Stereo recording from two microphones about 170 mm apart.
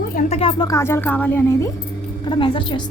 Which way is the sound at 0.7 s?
15° left (ahead or behind).